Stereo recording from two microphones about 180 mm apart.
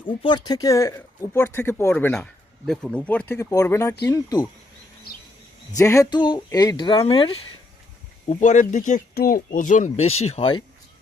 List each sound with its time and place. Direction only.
0.2 s speech: 25° left (ahead or behind)
5.7 s speech: 15° left (ahead or behind)
8.3 s speech: 45° left (ahead or behind)